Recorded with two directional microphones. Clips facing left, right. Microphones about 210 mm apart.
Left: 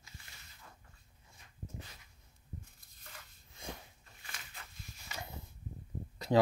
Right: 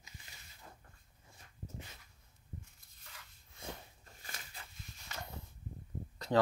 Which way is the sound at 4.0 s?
40° right (ahead or behind).